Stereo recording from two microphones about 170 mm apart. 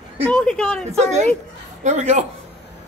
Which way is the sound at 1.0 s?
40° right (ahead or behind).